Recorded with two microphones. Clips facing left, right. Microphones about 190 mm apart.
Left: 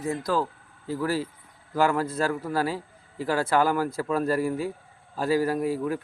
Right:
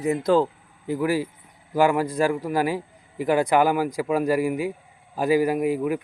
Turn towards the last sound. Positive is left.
turn(degrees=-15)  # may be behind; listen again after turning